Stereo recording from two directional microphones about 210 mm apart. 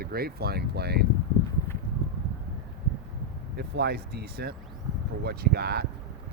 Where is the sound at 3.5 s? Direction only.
50° right (ahead or behind).